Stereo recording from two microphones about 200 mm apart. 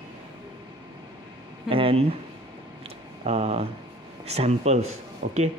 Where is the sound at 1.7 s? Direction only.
25° right (ahead or behind).